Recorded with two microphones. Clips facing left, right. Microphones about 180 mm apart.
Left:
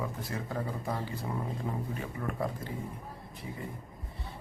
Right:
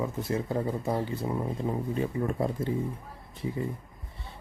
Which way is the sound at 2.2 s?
25° right (ahead or behind).